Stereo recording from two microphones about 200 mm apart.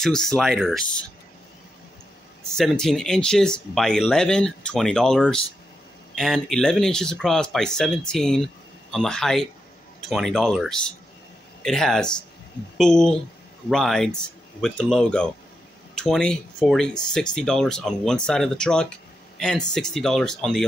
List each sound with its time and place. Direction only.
0.0 s speech: centre (ahead or behind)
2.5 s speech: centre (ahead or behind)